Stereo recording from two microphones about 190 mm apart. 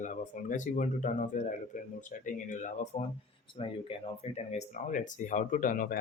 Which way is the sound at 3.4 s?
30° left (ahead or behind).